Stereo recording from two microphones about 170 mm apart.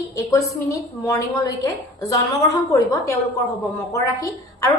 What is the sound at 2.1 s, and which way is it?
A woman's voice, 20° left (ahead or behind).